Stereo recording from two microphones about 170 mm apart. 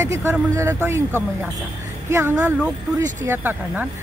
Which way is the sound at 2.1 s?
10° right (ahead or behind).